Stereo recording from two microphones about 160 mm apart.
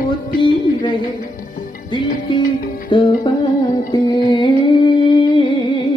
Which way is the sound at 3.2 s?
25° left (ahead or behind).